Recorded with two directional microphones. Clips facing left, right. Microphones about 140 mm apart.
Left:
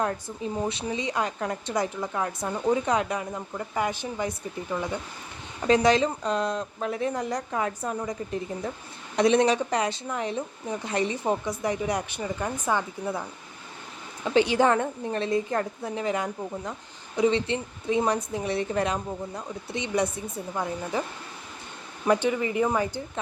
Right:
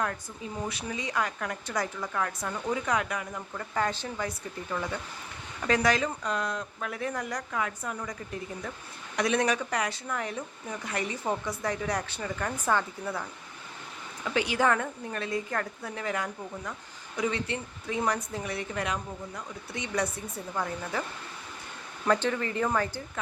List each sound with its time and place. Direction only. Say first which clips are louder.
0.0 s a woman's voice: left 5 dB; 25° left (ahead or behind)
14.3 s a woman's voice: left 5 dB; 25° left (ahead or behind)
22.0 s speech: left 3 dB; 15° left (ahead or behind)